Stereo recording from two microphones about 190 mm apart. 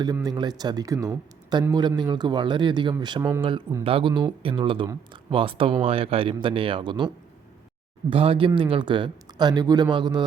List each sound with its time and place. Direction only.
0.0 s speech: 20° right (ahead or behind)
3.8 s speech: 25° right (ahead or behind)
8.1 s speech: 30° right (ahead or behind)